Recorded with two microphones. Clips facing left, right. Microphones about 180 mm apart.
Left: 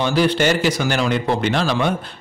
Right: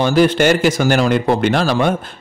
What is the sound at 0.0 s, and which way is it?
A man's voice, 45° right (ahead or behind).